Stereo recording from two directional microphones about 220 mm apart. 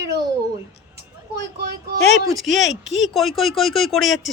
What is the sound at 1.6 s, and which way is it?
Speech, 45° right (ahead or behind).